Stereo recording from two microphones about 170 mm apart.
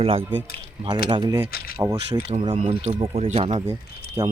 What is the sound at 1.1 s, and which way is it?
Speech, 25° right (ahead or behind).